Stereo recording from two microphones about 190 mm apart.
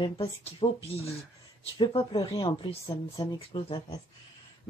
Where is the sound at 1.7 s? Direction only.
25° left (ahead or behind).